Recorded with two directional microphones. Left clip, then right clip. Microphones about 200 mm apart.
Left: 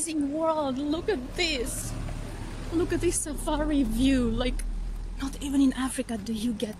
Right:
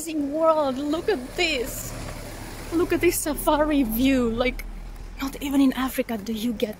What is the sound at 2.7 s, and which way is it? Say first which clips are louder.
A woman's voice: right 5 dB; 25° right (ahead or behind).